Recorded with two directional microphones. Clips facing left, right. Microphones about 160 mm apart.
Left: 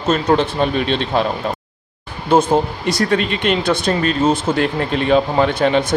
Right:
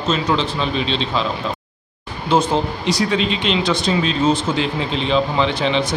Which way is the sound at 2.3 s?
50° left (ahead or behind).